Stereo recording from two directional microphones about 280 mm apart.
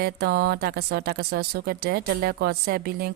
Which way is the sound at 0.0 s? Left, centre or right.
Right.